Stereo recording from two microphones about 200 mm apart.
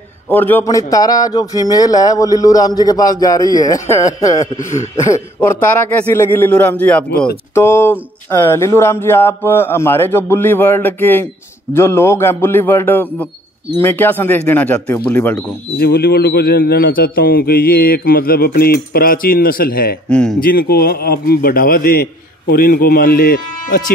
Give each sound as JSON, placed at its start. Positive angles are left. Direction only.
{"t": 0.3, "sound": "speech", "side_deg": 10}
{"t": 15.8, "sound": "a man's voice", "side_deg": 50}
{"t": 20.1, "sound": "speech", "side_deg": 5}
{"t": 20.3, "sound": "a man's voice", "side_deg": 45}